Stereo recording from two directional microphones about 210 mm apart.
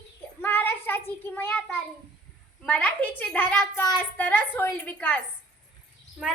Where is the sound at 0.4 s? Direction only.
10° left (ahead or behind).